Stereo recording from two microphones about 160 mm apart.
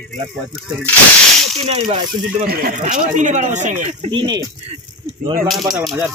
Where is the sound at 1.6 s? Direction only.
40° right (ahead or behind).